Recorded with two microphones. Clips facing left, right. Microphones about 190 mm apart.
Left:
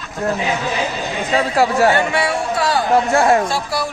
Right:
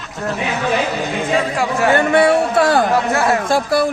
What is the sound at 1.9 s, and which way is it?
A man's voice, 55° right (ahead or behind).